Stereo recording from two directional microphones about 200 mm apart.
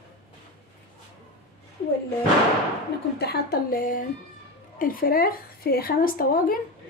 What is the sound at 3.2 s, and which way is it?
A woman's voice, 50° left (ahead or behind).